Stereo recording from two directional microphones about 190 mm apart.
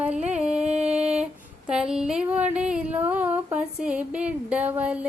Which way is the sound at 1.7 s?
5° right (ahead or behind).